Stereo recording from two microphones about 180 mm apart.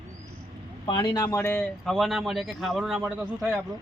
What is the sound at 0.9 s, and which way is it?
Speech, 20° left (ahead or behind).